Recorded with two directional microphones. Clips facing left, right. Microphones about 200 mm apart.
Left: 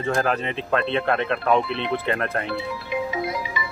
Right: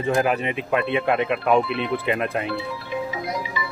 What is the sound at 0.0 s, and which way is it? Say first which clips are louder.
Speech: right 2 dB; 10° right (ahead or behind).